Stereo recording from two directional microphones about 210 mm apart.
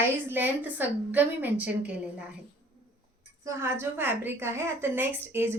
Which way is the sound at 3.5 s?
10° right (ahead or behind).